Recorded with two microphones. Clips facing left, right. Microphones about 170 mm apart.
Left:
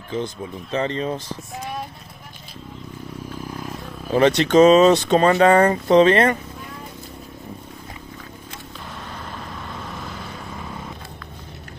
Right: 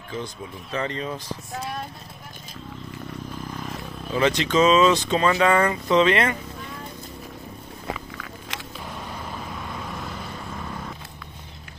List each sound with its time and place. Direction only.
0.1 s speech: 25° left (ahead or behind)
3.4 s vehicle: 5° left (ahead or behind)
4.3 s speech: 55° left (ahead or behind)
4.9 s speech: 65° left (ahead or behind)
5.2 s speech: 40° left (ahead or behind)
7.9 s purr: 90° right
8.8 s vehicle: 5° right (ahead or behind)